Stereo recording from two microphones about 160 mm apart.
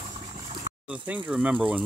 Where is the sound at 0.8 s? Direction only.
5° right (ahead or behind).